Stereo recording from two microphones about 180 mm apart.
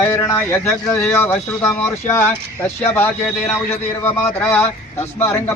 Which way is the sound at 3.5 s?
10° left (ahead or behind).